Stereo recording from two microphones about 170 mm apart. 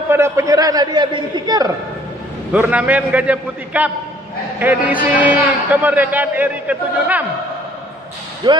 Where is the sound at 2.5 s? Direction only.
10° right (ahead or behind).